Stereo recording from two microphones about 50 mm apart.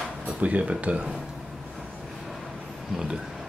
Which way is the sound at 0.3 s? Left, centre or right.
Right.